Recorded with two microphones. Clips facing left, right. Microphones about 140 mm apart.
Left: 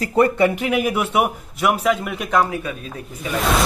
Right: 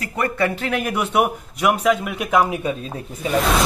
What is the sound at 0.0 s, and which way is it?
Speech, 30° left (ahead or behind).